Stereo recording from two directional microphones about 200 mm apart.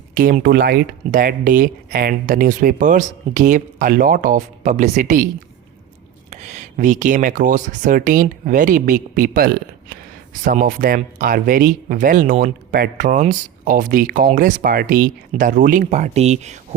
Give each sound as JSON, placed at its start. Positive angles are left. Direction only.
{"t": 0.1, "sound": "speech", "side_deg": -45}
{"t": 6.3, "sound": "speech", "side_deg": -35}